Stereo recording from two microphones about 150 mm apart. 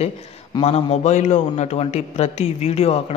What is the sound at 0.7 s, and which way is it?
A man's voice, 45° left (ahead or behind).